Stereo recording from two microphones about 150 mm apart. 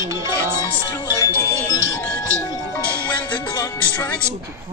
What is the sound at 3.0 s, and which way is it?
Music, 10° left (ahead or behind).